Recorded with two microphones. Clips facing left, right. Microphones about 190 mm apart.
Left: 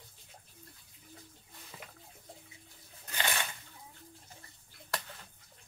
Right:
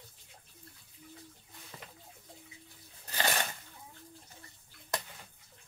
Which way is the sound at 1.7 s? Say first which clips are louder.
Even; 10° left (ahead or behind).